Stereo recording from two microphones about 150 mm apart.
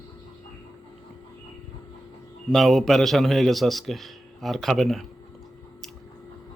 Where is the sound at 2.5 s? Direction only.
Centre (ahead or behind).